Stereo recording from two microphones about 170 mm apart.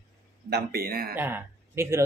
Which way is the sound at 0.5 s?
65° right (ahead or behind).